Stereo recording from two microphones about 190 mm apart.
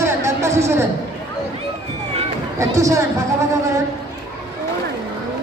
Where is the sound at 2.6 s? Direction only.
15° right (ahead or behind).